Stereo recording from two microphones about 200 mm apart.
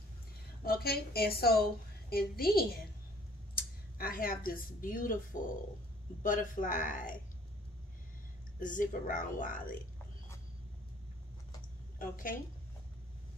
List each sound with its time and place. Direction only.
0.7 s a woman's voice: 50° left (ahead or behind)
8.5 s speech: 40° left (ahead or behind)
12.0 s a woman's voice: 45° left (ahead or behind)